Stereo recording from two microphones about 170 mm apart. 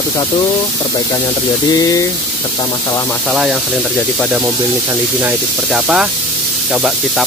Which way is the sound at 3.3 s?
5° right (ahead or behind).